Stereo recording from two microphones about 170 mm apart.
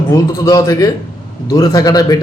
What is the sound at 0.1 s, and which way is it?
A man's voice, 20° left (ahead or behind).